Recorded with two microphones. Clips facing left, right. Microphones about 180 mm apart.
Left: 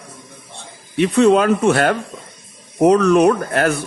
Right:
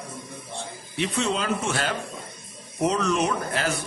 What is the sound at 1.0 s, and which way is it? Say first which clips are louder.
A man's voice: left 13 dB; 55° left (ahead or behind).